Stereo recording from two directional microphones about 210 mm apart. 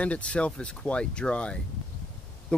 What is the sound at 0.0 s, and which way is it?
Speech, 5° left (ahead or behind).